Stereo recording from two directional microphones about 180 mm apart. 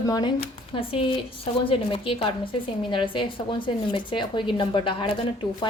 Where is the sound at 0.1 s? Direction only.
30° left (ahead or behind).